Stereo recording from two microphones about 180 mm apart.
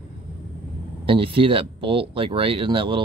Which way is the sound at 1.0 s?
30° right (ahead or behind).